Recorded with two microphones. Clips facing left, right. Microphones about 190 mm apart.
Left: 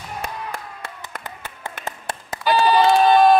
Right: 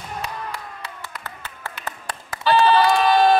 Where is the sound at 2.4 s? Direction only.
15° left (ahead or behind).